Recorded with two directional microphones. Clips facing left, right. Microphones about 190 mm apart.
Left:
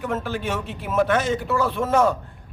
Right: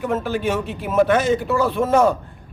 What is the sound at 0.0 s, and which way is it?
A man's voice, 10° right (ahead or behind).